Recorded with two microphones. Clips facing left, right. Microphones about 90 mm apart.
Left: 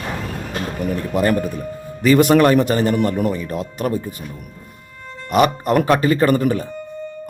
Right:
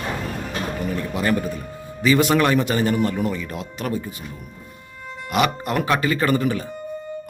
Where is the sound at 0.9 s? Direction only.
45° left (ahead or behind).